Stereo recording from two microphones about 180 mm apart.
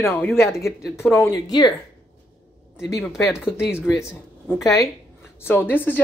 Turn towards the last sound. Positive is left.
turn(degrees=10)  # may be behind; listen again after turning